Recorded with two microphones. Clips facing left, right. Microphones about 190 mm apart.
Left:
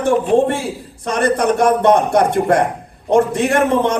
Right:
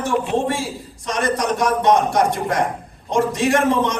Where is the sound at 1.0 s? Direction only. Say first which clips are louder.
Left 5 dB; 55° left (ahead or behind).